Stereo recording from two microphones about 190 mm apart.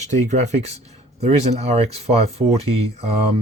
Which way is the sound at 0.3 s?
35° right (ahead or behind).